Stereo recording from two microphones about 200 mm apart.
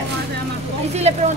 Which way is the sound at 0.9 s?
35° right (ahead or behind).